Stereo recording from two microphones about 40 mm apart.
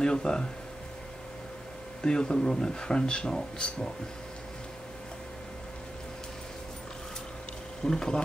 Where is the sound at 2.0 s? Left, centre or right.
Left.